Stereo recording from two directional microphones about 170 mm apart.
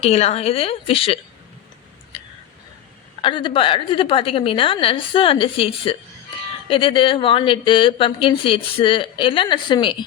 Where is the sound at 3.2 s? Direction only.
30° left (ahead or behind).